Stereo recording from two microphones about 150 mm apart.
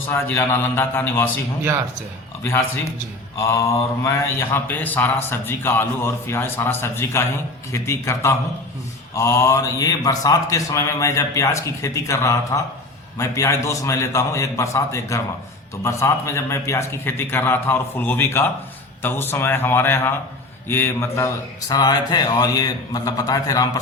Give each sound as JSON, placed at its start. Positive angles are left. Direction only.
{"t": 0.1, "sound": "a man's voice", "side_deg": 15}
{"t": 4.0, "sound": "a man's voice", "side_deg": 15}